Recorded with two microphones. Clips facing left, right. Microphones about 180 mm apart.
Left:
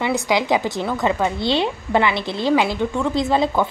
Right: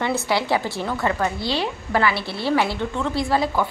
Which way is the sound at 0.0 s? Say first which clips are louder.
Left 2 dB; 15° left (ahead or behind).